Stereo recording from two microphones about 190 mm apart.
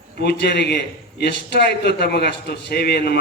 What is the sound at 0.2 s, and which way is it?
A man's voice, 60° left (ahead or behind).